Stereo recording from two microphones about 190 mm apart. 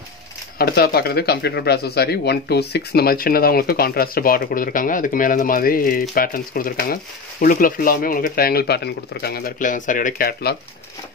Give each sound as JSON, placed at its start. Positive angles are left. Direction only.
{"t": 0.6, "sound": "speech", "side_deg": 55}